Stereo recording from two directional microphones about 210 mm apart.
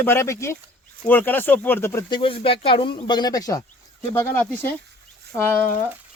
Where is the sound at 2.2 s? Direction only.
25° left (ahead or behind).